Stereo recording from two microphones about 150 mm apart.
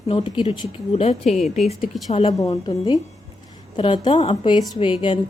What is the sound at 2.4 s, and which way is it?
Speech, 20° left (ahead or behind).